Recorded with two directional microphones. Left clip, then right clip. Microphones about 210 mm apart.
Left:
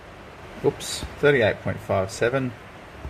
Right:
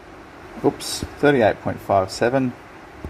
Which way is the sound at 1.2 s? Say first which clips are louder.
Right 3 dB; 30° right (ahead or behind).